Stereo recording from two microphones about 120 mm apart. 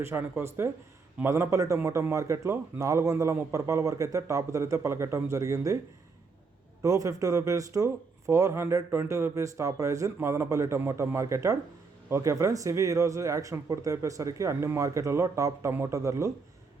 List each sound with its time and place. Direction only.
0.0 s a man's voice: 20° right (ahead or behind)
6.8 s a man's voice: 25° right (ahead or behind)